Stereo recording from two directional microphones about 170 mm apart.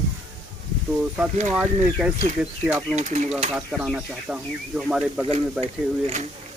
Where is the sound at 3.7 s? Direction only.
5° right (ahead or behind).